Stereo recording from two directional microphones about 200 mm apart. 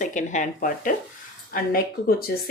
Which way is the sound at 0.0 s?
40° left (ahead or behind).